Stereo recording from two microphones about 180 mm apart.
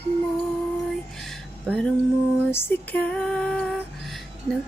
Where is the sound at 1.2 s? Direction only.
5° left (ahead or behind).